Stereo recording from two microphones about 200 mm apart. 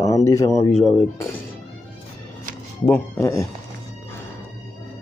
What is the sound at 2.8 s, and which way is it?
Speech, 10° left (ahead or behind).